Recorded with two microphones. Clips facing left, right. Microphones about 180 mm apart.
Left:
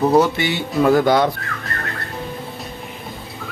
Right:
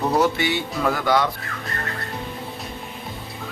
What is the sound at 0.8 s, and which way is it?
Speech, 30° left (ahead or behind).